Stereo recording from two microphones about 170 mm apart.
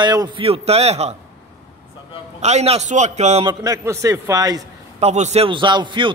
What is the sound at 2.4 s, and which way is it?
A man's voice, 40° right (ahead or behind).